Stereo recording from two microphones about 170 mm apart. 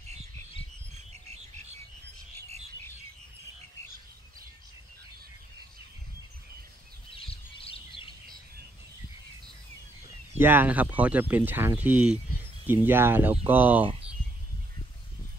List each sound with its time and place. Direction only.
1.1 s bird: 40° right (ahead or behind)
7.1 s chirp: 30° left (ahead or behind)
10.3 s speech: 10° right (ahead or behind)